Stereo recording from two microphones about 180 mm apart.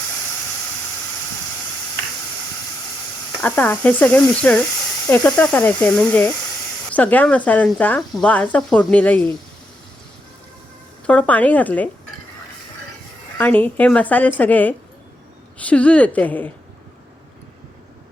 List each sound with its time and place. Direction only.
3.4 s speech: 10° left (ahead or behind)
11.0 s speech: 5° left (ahead or behind)
13.4 s speech: 10° left (ahead or behind)